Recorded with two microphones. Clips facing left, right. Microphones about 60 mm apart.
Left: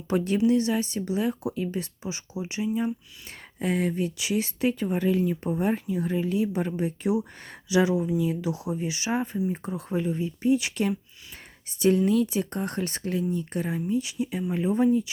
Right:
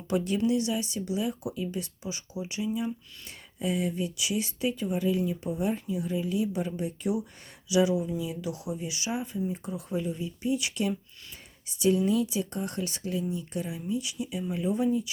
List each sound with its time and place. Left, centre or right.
0.1 s speech: left
3.6 s speech: left
13.8 s speech: left